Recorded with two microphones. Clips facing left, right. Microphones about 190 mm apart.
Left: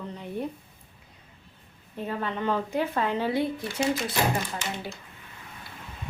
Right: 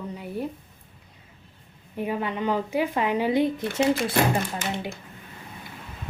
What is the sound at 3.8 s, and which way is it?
Speech, 60° right (ahead or behind).